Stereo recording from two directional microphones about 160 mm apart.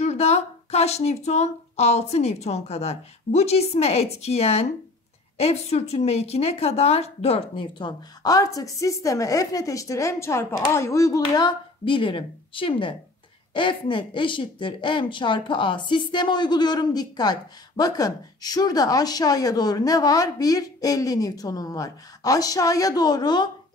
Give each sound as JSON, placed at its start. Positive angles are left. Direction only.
{"t": 0.0, "sound": "speech", "side_deg": 45}